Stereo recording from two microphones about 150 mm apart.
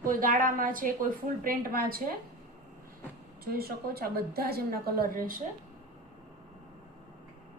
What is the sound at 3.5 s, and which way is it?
A woman's voice, 90° right.